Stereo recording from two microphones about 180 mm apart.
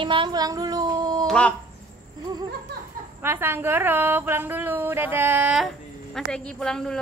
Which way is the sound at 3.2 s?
10° right (ahead or behind).